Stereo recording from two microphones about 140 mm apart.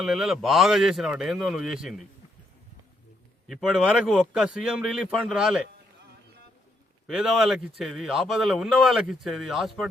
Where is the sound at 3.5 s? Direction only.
5° right (ahead or behind).